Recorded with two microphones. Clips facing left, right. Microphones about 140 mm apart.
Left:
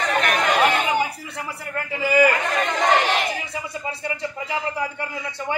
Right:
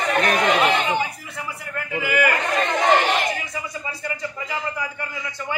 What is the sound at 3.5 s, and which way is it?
Music, 25° left (ahead or behind).